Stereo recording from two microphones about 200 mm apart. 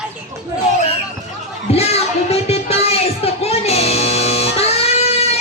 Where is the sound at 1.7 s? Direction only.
30° left (ahead or behind).